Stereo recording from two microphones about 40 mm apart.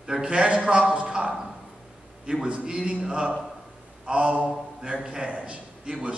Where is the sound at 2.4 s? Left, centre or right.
Right.